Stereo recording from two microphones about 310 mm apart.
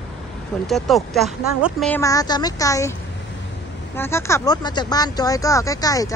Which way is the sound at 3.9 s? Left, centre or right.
Centre.